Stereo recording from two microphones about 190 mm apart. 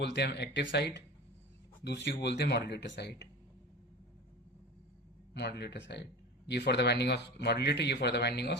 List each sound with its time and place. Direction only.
0.0 s speech: 65° left (ahead or behind)
5.3 s speech: 60° left (ahead or behind)